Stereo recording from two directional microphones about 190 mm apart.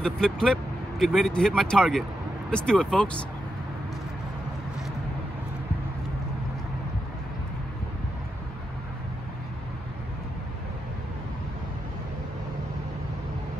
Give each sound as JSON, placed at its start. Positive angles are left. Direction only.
{"t": 0.0, "sound": "speech", "side_deg": 5}